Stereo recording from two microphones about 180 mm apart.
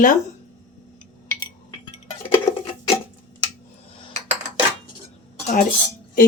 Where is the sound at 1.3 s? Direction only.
20° left (ahead or behind).